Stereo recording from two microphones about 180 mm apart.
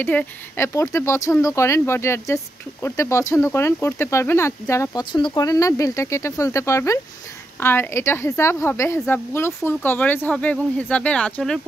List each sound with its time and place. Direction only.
0.0 s speech: 10° left (ahead or behind)